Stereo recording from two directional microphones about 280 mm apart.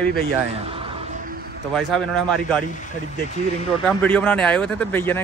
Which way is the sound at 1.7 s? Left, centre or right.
Centre.